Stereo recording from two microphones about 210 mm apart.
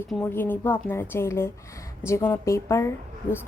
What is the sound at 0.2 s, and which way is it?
Speech, 10° left (ahead or behind).